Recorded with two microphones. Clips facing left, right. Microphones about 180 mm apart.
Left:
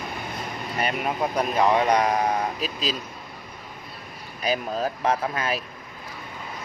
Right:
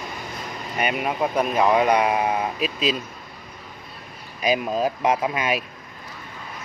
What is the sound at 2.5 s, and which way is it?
Speech, 35° left (ahead or behind).